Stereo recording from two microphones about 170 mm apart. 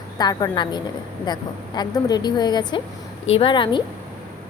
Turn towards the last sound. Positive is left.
turn(degrees=30)  # may be behind; listen again after turning